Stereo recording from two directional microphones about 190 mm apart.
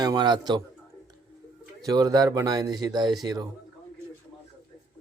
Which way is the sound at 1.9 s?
20° right (ahead or behind).